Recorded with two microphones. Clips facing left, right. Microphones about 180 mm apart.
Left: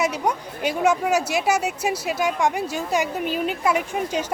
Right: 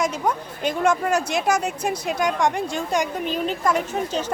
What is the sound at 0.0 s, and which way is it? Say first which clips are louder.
Speech: even; 10° left (ahead or behind).